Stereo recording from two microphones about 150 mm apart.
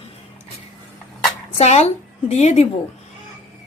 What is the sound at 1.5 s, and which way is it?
A woman's voice, 45° left (ahead or behind).